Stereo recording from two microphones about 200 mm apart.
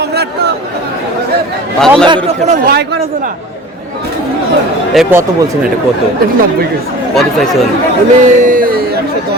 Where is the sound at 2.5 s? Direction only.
45° right (ahead or behind).